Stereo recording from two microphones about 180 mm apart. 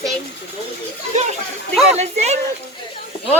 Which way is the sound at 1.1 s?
40° right (ahead or behind).